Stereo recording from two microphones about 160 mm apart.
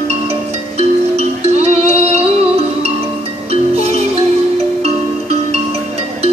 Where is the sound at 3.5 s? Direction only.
40° right (ahead or behind).